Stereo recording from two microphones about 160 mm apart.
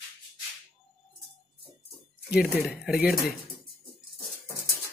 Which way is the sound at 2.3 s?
Centre (ahead or behind).